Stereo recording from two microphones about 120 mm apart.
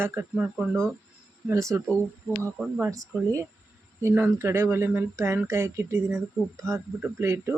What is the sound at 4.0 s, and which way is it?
A man's voice, 20° right (ahead or behind).